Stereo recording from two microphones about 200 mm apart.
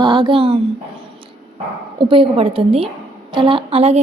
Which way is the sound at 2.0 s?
25° right (ahead or behind).